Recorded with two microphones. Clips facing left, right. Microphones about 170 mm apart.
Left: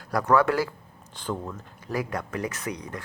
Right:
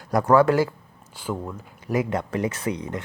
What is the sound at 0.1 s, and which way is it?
Speech, 25° right (ahead or behind).